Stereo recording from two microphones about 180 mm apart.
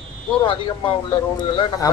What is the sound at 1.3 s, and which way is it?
Speech, 25° left (ahead or behind).